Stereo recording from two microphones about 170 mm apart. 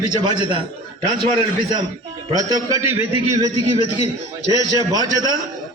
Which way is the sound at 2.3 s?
20° right (ahead or behind).